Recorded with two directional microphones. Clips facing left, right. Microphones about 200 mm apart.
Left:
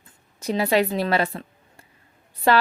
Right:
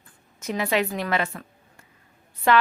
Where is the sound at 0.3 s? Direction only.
35° left (ahead or behind).